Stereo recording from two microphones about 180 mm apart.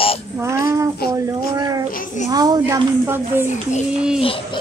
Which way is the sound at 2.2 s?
20° right (ahead or behind).